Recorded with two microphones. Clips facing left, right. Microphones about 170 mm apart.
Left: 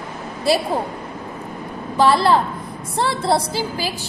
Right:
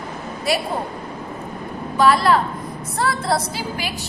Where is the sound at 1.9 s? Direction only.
30° left (ahead or behind).